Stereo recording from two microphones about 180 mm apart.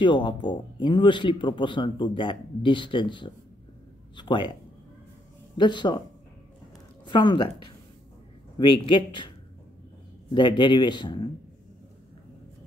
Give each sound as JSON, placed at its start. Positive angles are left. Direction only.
{"t": 0.0, "sound": "speech", "side_deg": 25}
{"t": 5.6, "sound": "speech", "side_deg": 25}
{"t": 7.1, "sound": "speech", "side_deg": 25}
{"t": 8.8, "sound": "speech", "side_deg": 25}
{"t": 10.3, "sound": "speech", "side_deg": 25}